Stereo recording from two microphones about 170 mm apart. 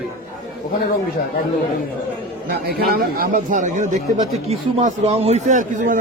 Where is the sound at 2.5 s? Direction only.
65° right (ahead or behind).